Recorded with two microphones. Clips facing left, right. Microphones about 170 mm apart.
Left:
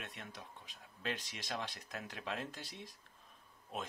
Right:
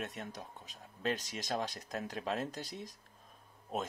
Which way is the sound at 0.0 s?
40° right (ahead or behind).